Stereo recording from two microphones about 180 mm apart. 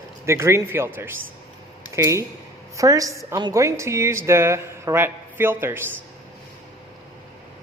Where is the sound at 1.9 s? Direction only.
15° right (ahead or behind).